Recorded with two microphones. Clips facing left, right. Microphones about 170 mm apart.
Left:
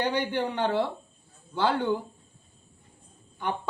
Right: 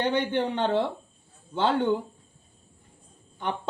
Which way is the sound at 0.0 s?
20° right (ahead or behind).